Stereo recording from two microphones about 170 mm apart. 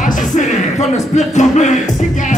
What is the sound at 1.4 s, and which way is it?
Music, 40° left (ahead or behind).